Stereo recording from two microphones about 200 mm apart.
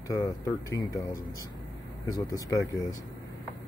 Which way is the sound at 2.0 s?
20° left (ahead or behind).